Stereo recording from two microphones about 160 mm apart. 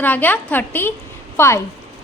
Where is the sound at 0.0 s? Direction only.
10° left (ahead or behind).